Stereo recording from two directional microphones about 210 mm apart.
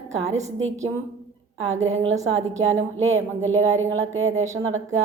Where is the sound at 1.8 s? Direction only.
30° right (ahead or behind).